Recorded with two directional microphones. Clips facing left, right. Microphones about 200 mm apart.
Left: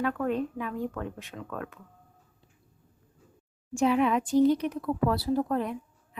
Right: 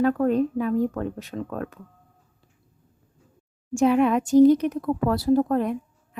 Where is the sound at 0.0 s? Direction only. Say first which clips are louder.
Right 8 dB; 40° right (ahead or behind).